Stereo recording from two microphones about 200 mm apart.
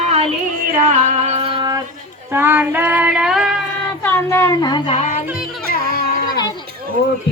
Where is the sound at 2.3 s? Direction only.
10° right (ahead or behind).